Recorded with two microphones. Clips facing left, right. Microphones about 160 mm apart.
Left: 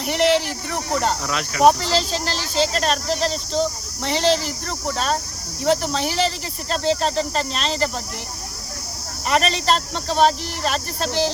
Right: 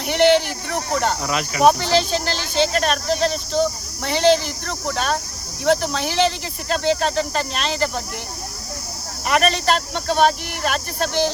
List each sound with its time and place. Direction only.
0.0 s speech: 30° left (ahead or behind)
1.2 s speech: 5° right (ahead or behind)
1.9 s speech: 30° left (ahead or behind)
5.9 s speech: 30° left (ahead or behind)
9.2 s speech: 30° left (ahead or behind)